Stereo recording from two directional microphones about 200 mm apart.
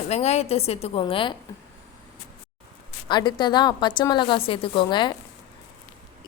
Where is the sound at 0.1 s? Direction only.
35° left (ahead or behind).